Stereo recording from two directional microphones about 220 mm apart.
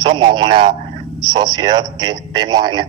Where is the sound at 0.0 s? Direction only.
20° right (ahead or behind).